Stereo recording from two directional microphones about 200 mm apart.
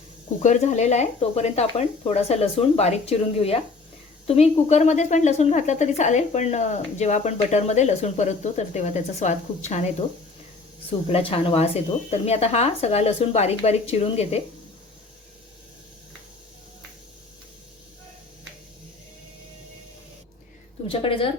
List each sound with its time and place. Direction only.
0.4 s a woman's voice: 35° left (ahead or behind)
11.1 s a woman's voice: 25° left (ahead or behind)
20.8 s a woman's voice: 25° left (ahead or behind)